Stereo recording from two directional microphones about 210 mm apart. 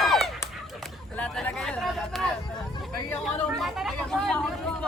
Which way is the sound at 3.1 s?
5° left (ahead or behind).